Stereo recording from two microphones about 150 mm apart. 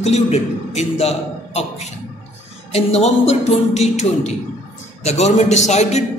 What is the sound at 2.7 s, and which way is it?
A man's voice, 45° left (ahead or behind).